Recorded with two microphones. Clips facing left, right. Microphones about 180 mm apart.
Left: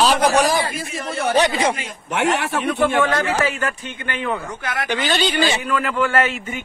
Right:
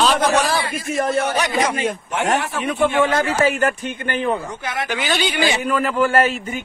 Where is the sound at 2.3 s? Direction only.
70° left (ahead or behind).